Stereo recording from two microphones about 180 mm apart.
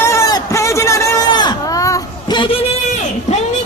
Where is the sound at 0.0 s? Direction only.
15° left (ahead or behind).